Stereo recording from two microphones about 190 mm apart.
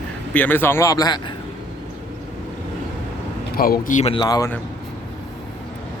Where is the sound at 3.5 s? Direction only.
50° left (ahead or behind).